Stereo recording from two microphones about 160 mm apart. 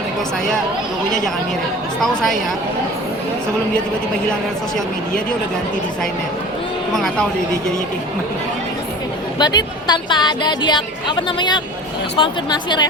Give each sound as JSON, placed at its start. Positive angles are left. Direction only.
{"t": 2.0, "sound": "a woman's voice", "side_deg": 5}
{"t": 6.9, "sound": "a woman's voice", "side_deg": 5}
{"t": 9.4, "sound": "speech", "side_deg": 25}